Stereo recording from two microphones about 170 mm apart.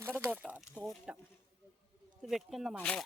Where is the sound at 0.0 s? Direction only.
15° right (ahead or behind).